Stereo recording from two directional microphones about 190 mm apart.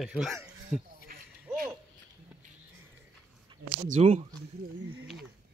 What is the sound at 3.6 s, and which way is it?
Speech, 40° right (ahead or behind).